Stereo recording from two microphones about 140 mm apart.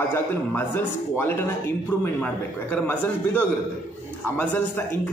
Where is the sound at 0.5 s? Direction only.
15° left (ahead or behind).